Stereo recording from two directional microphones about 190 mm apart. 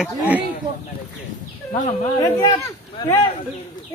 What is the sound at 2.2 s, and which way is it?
Speech, 20° left (ahead or behind).